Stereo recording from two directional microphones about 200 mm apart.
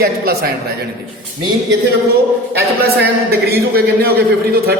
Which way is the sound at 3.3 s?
50° right (ahead or behind).